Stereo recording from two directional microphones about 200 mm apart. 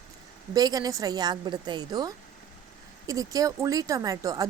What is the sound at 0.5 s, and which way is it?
A woman's voice, 20° right (ahead or behind).